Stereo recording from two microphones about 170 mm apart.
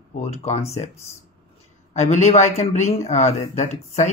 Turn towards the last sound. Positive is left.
turn(degrees=45)  # may be behind; listen again after turning